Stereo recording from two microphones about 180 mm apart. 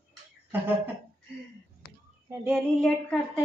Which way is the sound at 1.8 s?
60° left (ahead or behind).